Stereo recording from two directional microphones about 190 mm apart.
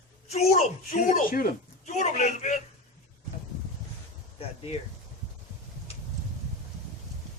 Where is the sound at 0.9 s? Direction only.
45° left (ahead or behind).